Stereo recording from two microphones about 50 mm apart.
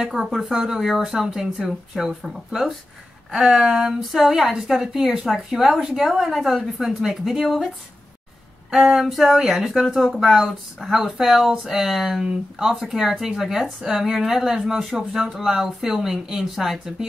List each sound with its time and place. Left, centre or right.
0.0 s a woman's voice: centre